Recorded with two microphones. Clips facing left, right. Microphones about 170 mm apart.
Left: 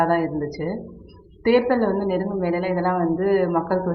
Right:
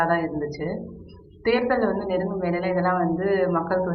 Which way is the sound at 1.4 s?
25° left (ahead or behind).